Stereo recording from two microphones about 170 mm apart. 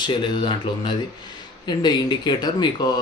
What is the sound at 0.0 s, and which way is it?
Speech, 25° left (ahead or behind).